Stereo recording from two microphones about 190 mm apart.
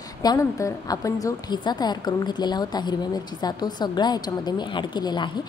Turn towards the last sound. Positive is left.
turn(degrees=25)  # may be behind; listen again after turning